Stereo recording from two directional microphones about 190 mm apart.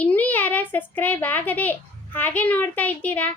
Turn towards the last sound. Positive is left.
turn(degrees=10)  # may be behind; listen again after turning